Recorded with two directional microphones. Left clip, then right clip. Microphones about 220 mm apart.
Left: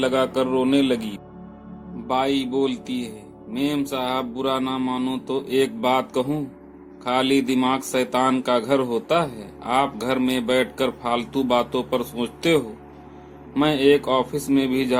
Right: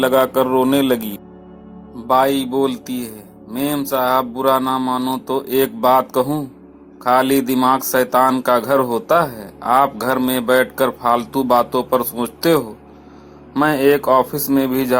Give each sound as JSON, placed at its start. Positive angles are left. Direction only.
{"t": 0.0, "sound": "speech", "side_deg": -25}
{"t": 2.0, "sound": "speech", "side_deg": -20}
{"t": 7.3, "sound": "speech", "side_deg": -55}
{"t": 7.5, "sound": "speech", "side_deg": -20}
{"t": 13.6, "sound": "speech", "side_deg": -15}